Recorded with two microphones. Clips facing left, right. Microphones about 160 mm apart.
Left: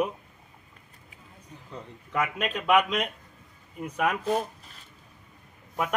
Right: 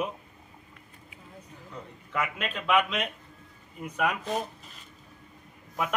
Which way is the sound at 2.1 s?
10° left (ahead or behind).